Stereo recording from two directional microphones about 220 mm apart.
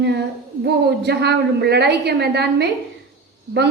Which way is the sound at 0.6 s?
50° right (ahead or behind).